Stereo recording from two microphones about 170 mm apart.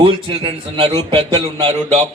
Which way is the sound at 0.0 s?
30° right (ahead or behind).